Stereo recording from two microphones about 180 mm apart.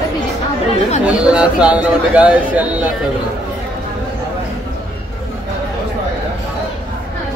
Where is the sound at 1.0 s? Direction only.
5° right (ahead or behind).